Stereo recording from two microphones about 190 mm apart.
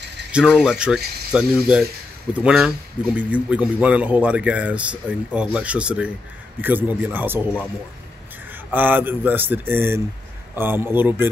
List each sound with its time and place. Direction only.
0.3 s a man's voice: 5° right (ahead or behind)
8.7 s a man's voice: 10° right (ahead or behind)